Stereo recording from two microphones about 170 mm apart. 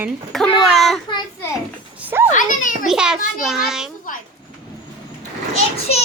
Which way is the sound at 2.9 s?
5° right (ahead or behind).